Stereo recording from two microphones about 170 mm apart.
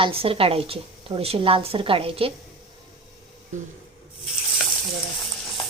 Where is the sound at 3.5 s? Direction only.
45° right (ahead or behind).